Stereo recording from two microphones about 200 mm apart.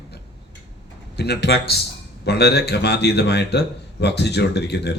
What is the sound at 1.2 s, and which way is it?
Speech, 55° left (ahead or behind).